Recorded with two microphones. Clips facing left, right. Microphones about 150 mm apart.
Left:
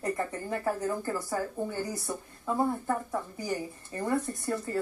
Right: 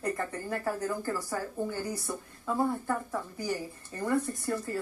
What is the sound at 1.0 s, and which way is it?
Speech, 20° left (ahead or behind).